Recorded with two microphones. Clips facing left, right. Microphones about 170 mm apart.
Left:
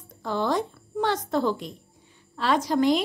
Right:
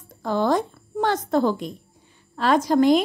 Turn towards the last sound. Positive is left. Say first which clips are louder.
# right 5 dB
turn(degrees=-50)  # may be behind; listen again after turning